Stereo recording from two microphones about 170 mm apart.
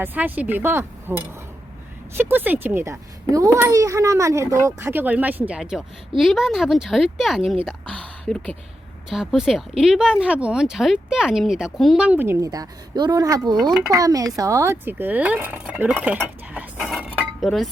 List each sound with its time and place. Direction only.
0.0 s a child's voice: 10° right (ahead or behind)
16.7 s chink: centre (ahead or behind)